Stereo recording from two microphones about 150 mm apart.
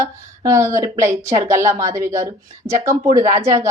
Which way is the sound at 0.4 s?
20° right (ahead or behind).